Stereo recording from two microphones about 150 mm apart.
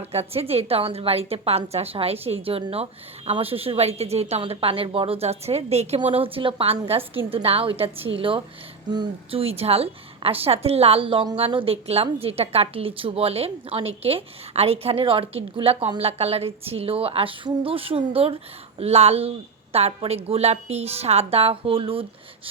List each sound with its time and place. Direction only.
0.1 s a woman's voice: 40° right (ahead or behind)